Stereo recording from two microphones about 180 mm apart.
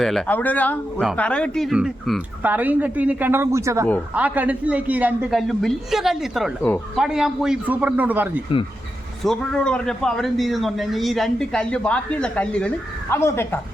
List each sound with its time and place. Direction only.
0.0 s speech: centre (ahead or behind)
8.5 s speech: 30° left (ahead or behind)
9.2 s a man's voice: centre (ahead or behind)